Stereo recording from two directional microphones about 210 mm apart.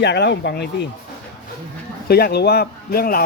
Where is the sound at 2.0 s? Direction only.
50° left (ahead or behind).